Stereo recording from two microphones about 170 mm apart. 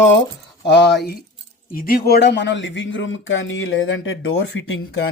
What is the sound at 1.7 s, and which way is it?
Speech, 60° left (ahead or behind).